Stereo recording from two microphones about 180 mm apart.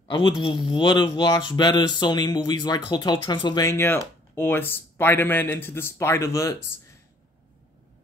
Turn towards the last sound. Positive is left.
turn(degrees=15)  # may be behind; listen again after turning